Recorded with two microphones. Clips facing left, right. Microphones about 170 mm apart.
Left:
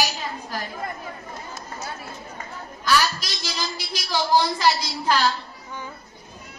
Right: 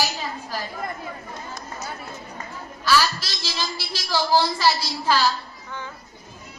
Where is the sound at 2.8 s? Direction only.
15° left (ahead or behind).